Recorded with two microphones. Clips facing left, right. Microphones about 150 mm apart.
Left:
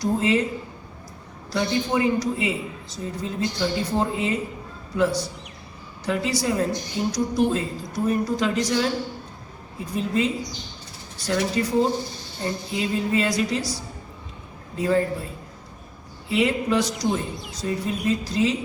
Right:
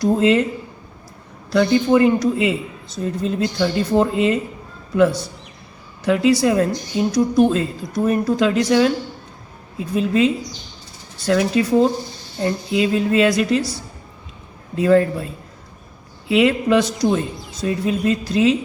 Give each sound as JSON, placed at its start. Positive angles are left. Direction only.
{"t": 0.0, "sound": "speech", "side_deg": -60}
{"t": 1.5, "sound": "speech", "side_deg": -65}
{"t": 6.1, "sound": "speech", "side_deg": -70}
{"t": 11.3, "sound": "speech", "side_deg": -70}
{"t": 14.8, "sound": "speech", "side_deg": -70}
{"t": 16.3, "sound": "speech", "side_deg": -70}